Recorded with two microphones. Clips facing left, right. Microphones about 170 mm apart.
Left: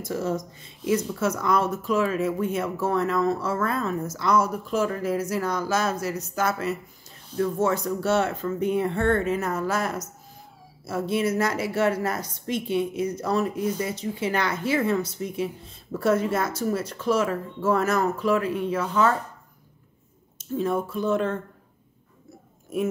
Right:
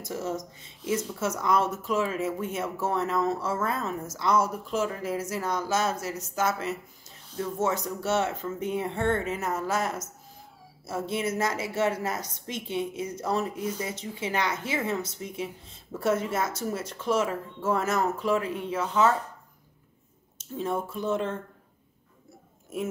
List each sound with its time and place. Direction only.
0.0 s speech: 25° right (ahead or behind)
20.3 s speech: 25° right (ahead or behind)